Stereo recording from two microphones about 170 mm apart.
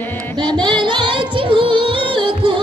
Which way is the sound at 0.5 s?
25° right (ahead or behind).